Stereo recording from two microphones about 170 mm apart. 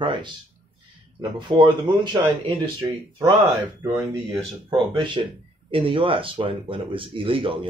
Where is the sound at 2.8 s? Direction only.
20° right (ahead or behind).